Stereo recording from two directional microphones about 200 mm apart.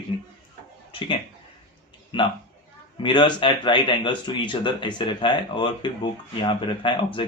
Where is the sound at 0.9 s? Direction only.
25° left (ahead or behind).